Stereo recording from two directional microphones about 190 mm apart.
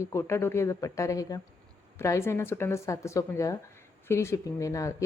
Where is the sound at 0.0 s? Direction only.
15° left (ahead or behind).